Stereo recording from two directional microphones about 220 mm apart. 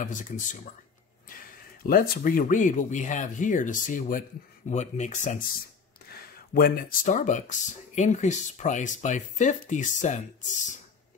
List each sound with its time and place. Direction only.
0.0 s speech: 35° left (ahead or behind)
6.0 s speech: 40° left (ahead or behind)